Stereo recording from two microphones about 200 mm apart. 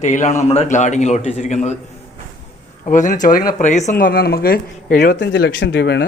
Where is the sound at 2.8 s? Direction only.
40° left (ahead or behind); by 6.0 s 60° left (ahead or behind).